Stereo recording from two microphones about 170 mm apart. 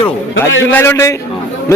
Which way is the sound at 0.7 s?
15° left (ahead or behind).